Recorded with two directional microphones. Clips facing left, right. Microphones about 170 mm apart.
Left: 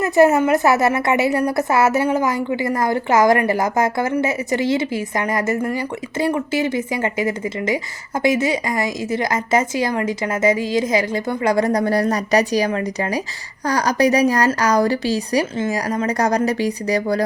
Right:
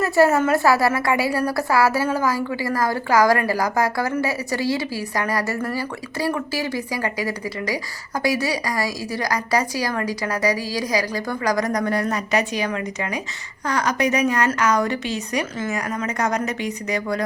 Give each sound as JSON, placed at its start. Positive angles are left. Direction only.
{"t": 0.0, "sound": "a woman's voice", "side_deg": 20}